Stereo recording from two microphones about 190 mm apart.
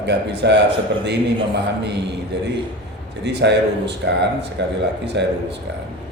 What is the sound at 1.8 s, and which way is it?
Speech, 65° right (ahead or behind).